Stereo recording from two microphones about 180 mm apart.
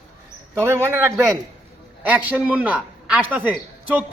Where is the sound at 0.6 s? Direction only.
10° right (ahead or behind).